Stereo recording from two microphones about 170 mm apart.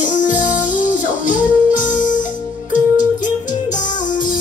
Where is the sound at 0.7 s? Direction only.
50° left (ahead or behind).